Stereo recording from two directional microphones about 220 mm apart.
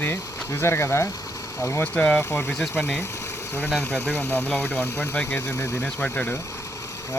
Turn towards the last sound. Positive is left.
turn(degrees=15)  # may be behind; listen again after turning